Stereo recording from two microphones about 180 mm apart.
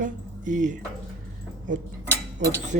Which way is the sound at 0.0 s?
45° right (ahead or behind).